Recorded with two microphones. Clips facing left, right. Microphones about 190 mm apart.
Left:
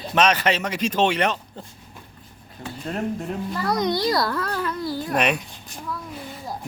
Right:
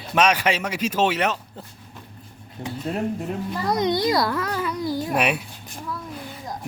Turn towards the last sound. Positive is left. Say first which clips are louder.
# even
turn(degrees=-5)  # may be behind; listen again after turning